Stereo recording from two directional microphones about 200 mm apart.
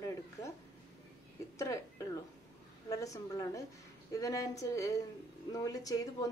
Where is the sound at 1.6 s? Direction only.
15° left (ahead or behind).